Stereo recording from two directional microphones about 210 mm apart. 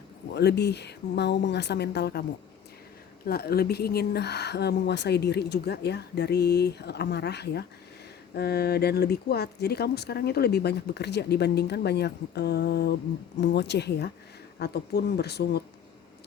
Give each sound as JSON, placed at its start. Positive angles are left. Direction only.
{"t": 0.3, "sound": "speech", "side_deg": 55}
{"t": 3.2, "sound": "speech", "side_deg": 45}